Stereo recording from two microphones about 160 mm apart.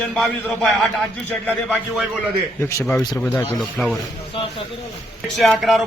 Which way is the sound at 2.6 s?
20° left (ahead or behind).